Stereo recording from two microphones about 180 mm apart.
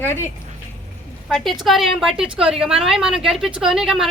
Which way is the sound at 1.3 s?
Centre (ahead or behind).